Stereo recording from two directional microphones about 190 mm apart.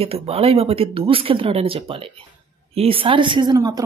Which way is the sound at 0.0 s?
30° right (ahead or behind).